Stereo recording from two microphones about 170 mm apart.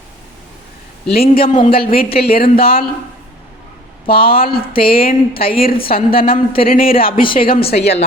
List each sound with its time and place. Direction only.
1.4 s speech: 55° left (ahead or behind)
2.0 s speech: 35° left (ahead or behind)
2.3 s speech: 60° left (ahead or behind)
4.1 s speech: 60° left (ahead or behind)
7.7 s speech: 75° left (ahead or behind)